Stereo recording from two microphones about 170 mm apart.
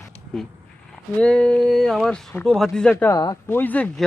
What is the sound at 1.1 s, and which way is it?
Speech, 5° left (ahead or behind).